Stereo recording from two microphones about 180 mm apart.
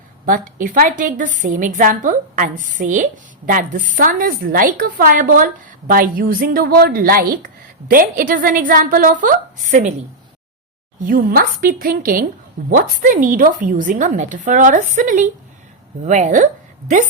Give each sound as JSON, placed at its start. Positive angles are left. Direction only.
{"t": 0.3, "sound": "a woman's voice", "side_deg": -50}
{"t": 11.0, "sound": "a woman's voice", "side_deg": -50}